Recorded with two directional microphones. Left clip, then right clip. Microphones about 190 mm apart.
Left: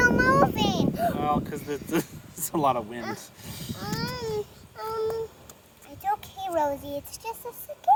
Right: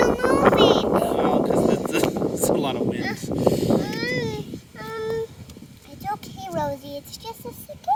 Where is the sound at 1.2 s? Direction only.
25° right (ahead or behind).